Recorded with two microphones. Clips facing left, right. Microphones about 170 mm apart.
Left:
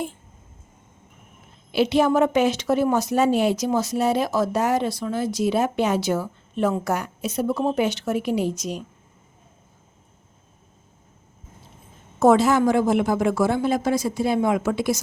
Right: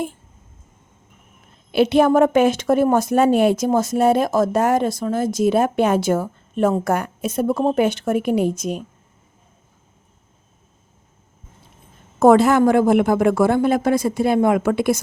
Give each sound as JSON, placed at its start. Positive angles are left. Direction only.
{"t": 1.7, "sound": "a woman's voice", "side_deg": -55}
{"t": 12.2, "sound": "a woman's voice", "side_deg": -55}